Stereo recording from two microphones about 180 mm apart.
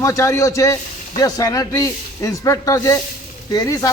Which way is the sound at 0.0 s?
15° left (ahead or behind).